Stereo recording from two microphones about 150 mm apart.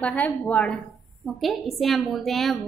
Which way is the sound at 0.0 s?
10° left (ahead or behind).